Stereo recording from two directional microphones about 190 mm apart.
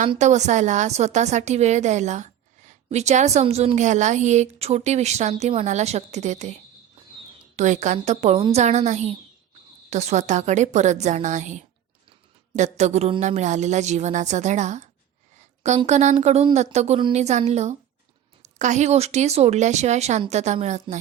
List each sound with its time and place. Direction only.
0.1 s a woman's voice: 35° right (ahead or behind)